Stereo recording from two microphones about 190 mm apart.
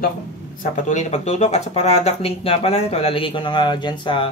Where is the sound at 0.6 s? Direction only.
40° left (ahead or behind); by 4.3 s 25° left (ahead or behind).